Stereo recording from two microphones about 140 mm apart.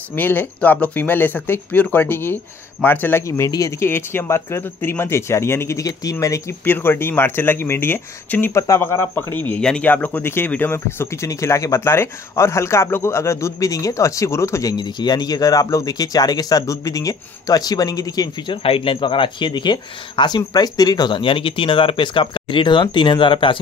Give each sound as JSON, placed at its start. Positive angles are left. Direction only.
{"t": 0.1, "sound": "speech", "side_deg": 15}
{"t": 18.6, "sound": "speech", "side_deg": 40}